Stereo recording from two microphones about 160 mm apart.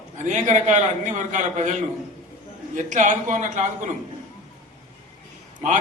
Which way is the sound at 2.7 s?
50° right (ahead or behind).